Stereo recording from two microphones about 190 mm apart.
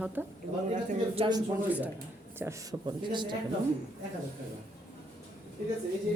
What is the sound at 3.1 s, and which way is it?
Speech, 25° right (ahead or behind).